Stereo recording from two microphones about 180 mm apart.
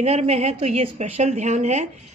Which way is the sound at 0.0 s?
35° right (ahead or behind).